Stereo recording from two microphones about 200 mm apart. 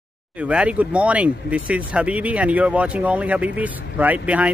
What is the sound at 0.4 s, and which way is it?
Speech, 5° right (ahead or behind).